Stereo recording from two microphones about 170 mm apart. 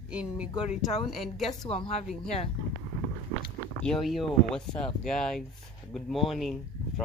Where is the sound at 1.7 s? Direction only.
35° left (ahead or behind).